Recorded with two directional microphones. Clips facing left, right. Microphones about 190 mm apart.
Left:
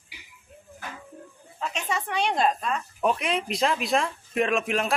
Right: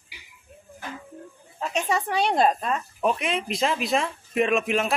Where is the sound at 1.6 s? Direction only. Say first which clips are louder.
Right 4 dB; 40° right (ahead or behind).